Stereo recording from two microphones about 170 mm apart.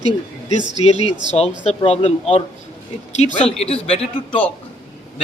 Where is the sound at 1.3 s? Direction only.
40° left (ahead or behind).